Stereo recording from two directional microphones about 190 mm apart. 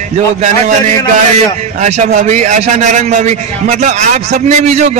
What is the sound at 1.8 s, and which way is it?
A man's voice, 40° right (ahead or behind).